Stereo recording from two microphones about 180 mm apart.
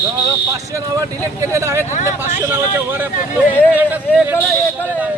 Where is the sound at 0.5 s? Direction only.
20° right (ahead or behind).